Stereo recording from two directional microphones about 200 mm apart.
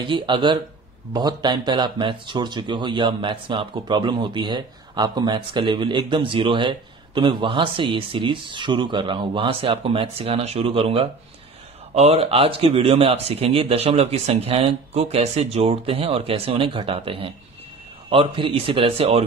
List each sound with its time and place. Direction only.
0.0 s speech: 25° right (ahead or behind)